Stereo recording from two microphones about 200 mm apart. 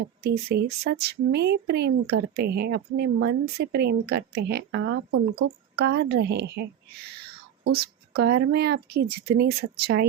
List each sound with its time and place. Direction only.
0.2 s a woman's voice: 55° right (ahead or behind)